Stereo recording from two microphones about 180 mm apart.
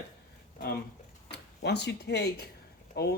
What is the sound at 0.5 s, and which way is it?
Speech, 55° left (ahead or behind).